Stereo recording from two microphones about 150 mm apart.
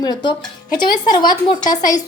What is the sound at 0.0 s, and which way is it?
Speech, 30° left (ahead or behind).